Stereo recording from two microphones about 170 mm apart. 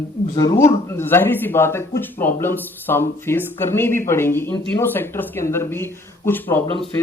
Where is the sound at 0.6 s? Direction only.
15° left (ahead or behind).